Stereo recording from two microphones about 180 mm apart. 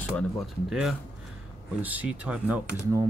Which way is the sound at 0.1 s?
Centre (ahead or behind).